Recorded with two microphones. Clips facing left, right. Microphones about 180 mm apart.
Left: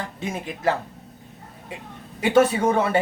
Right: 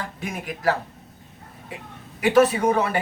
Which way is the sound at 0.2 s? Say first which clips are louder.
Left 2 dB; 25° left (ahead or behind).